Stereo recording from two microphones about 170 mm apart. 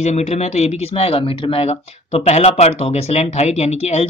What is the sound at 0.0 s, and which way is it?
Speech, 40° left (ahead or behind).